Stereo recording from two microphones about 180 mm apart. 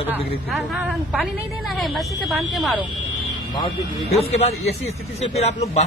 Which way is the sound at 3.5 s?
30° left (ahead or behind).